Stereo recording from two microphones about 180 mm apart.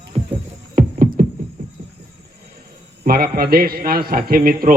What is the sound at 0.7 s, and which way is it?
Music, 55° right (ahead or behind).